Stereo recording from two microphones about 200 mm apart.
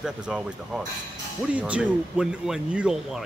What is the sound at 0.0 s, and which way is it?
Speech, 5° right (ahead or behind).